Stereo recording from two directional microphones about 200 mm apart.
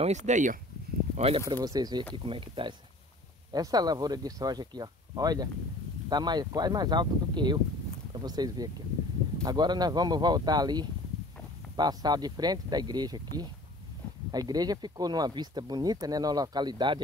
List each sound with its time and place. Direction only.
0.0 s speech: 35° right (ahead or behind)
1.5 s speech: 20° right (ahead or behind)